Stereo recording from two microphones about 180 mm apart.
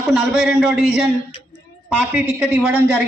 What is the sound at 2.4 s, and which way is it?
Speech, 10° right (ahead or behind).